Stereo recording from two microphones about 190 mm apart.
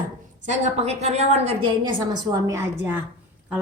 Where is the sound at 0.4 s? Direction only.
35° right (ahead or behind); by 3.0 s 10° right (ahead or behind).